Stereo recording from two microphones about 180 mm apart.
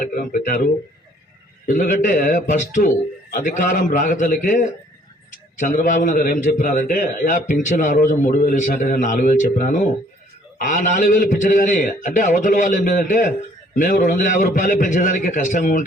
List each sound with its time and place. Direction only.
0.0 s a man's voice: 50° left (ahead or behind)